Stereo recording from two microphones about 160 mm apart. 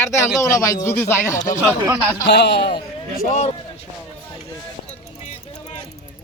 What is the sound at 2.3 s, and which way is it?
Speech, 90° left.